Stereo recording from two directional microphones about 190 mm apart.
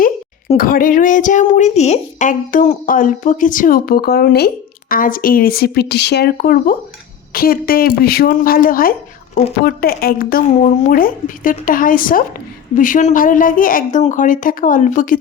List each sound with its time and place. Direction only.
0.5 s a woman's voice: 45° left (ahead or behind)